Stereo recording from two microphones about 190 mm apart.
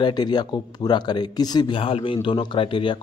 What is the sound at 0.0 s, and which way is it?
A man's voice, 20° left (ahead or behind).